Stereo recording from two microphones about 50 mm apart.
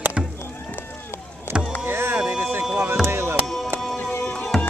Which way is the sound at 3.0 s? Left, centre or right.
Right.